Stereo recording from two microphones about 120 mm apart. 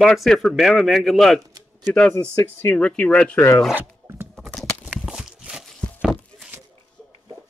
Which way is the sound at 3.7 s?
20° right (ahead or behind).